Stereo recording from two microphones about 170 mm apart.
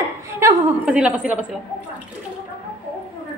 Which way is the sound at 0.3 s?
15° right (ahead or behind).